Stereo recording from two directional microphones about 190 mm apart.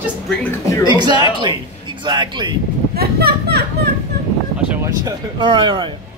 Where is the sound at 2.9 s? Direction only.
55° right (ahead or behind).